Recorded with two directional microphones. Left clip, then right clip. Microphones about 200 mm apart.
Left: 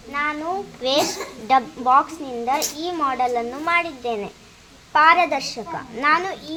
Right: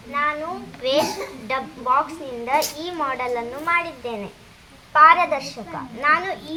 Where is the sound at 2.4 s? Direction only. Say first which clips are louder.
Right 1 dB; 15° left (ahead or behind); by 6.2 s 40° left (ahead or behind).